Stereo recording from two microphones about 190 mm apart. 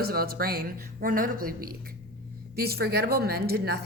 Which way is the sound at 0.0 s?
50° right (ahead or behind).